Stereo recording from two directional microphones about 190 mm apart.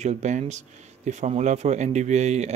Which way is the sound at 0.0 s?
35° right (ahead or behind).